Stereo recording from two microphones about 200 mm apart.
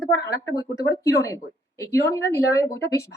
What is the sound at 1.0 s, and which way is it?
Speech, 15° left (ahead or behind).